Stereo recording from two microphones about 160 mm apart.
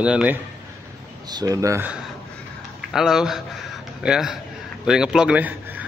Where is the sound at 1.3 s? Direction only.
25° right (ahead or behind).